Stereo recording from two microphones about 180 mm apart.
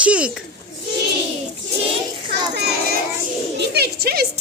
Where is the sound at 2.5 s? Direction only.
65° right (ahead or behind).